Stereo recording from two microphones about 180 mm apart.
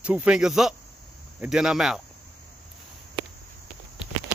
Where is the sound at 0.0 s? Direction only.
5° right (ahead or behind).